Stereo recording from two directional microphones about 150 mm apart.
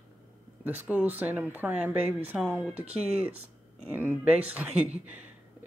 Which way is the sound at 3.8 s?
15° right (ahead or behind).